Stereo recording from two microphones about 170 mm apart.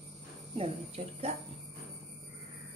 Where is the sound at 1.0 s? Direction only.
40° right (ahead or behind).